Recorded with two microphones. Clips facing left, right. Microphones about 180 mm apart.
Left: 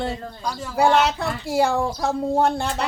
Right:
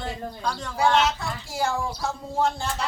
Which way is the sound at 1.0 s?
65° left (ahead or behind).